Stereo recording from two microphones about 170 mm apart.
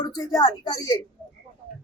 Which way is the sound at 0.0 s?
20° left (ahead or behind).